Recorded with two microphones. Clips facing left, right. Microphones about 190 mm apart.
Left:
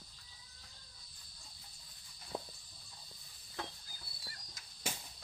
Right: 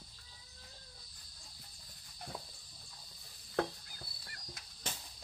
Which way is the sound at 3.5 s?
65° right (ahead or behind).